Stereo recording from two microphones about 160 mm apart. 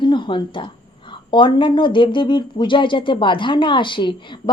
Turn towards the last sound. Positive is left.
turn(degrees=30)  # may be behind; listen again after turning